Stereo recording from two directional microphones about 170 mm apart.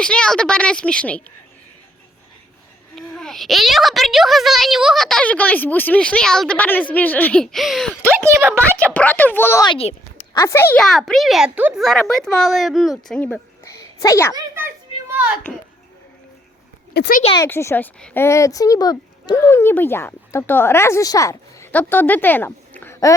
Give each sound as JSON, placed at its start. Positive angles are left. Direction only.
{"t": 0.0, "sound": "a child's voice", "side_deg": 5}
{"t": 2.9, "sound": "a child's voice", "side_deg": 0}
{"t": 8.0, "sound": "speech", "side_deg": -15}
{"t": 8.9, "sound": "speech", "side_deg": 10}
{"t": 9.6, "sound": "speech", "side_deg": 35}
{"t": 10.3, "sound": "speech", "side_deg": 15}
{"t": 10.8, "sound": "a child's voice", "side_deg": 0}
{"t": 16.9, "sound": "speech", "side_deg": 75}
{"t": 17.3, "sound": "speech", "side_deg": 15}
{"t": 19.5, "sound": "speech", "side_deg": 15}